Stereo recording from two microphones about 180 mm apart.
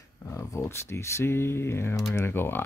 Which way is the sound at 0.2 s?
15° left (ahead or behind).